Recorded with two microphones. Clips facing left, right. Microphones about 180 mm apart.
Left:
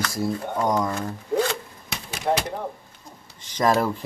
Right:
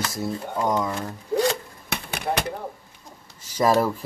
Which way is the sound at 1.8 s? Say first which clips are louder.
Left 3 dB; 60° right (ahead or behind).